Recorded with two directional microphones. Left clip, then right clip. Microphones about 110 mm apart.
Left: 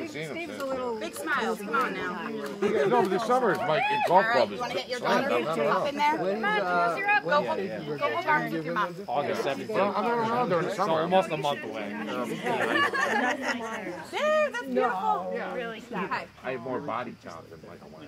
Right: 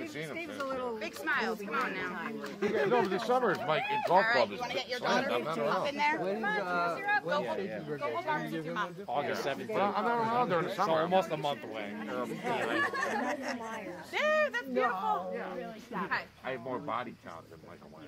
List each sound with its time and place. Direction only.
1.2 s speech: 20° right (ahead or behind)
7.0 s speech: centre (ahead or behind)
9.1 s speech: 30° right (ahead or behind)
12.7 s speech: 5° left (ahead or behind)
14.1 s speech: 20° right (ahead or behind)